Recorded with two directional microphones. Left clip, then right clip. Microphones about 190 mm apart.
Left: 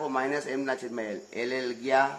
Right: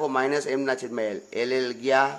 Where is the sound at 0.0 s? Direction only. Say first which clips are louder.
Right 5 dB; 45° right (ahead or behind).